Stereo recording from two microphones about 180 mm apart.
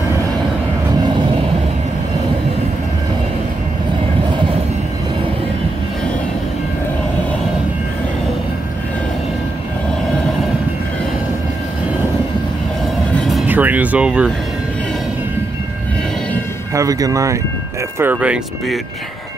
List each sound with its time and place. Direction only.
13.1 s vehicle: centre (ahead or behind)
16.7 s speech: 20° right (ahead or behind)